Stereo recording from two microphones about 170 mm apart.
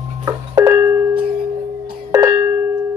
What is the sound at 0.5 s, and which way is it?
Music, 20° right (ahead or behind).